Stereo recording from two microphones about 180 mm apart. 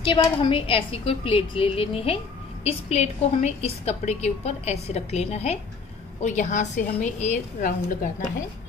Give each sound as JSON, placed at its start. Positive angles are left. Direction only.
{"t": 0.0, "sound": "a woman's voice", "side_deg": 30}